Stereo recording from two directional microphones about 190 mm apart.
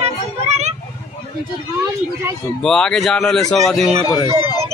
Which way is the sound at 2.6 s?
5° left (ahead or behind).